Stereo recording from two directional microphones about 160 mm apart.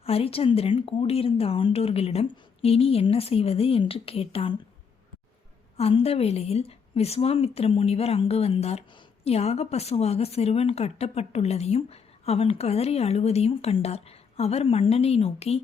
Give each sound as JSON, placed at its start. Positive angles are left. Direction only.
{"t": 0.0, "sound": "a woman's voice", "side_deg": 40}
{"t": 5.7, "sound": "a woman's voice", "side_deg": 40}